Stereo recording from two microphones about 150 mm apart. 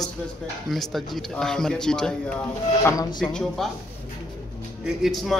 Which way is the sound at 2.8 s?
20° left (ahead or behind).